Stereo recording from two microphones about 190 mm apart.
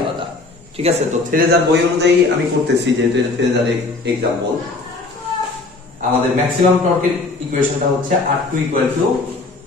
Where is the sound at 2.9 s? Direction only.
65° right (ahead or behind).